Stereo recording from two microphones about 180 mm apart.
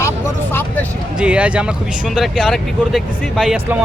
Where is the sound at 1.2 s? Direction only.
5° right (ahead or behind).